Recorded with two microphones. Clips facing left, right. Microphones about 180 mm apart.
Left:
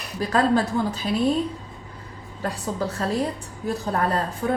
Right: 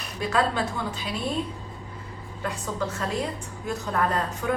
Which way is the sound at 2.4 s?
35° left (ahead or behind).